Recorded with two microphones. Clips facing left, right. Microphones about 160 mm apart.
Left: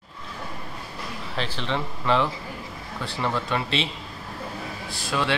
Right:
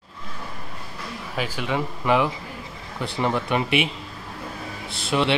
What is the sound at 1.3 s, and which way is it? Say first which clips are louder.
Speech: right 2 dB; 10° right (ahead or behind).